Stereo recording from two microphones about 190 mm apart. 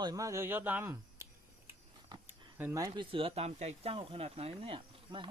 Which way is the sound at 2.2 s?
10° right (ahead or behind).